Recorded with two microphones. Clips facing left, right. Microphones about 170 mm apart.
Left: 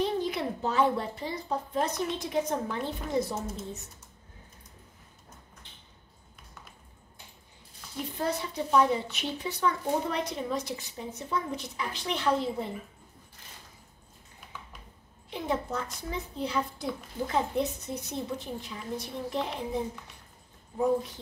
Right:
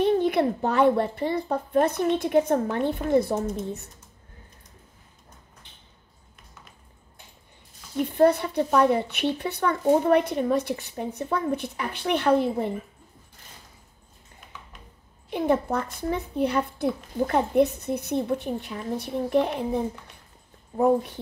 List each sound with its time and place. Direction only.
0.0 s a child's voice: 60° right (ahead or behind)
8.1 s a child's voice: 60° right (ahead or behind)
15.2 s a child's voice: 60° right (ahead or behind)